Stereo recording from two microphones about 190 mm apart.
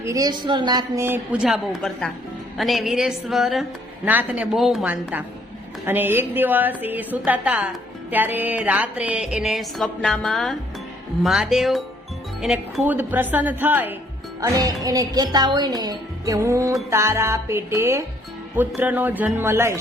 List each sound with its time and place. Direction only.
0.0 s a woman's voice: 20° right (ahead or behind)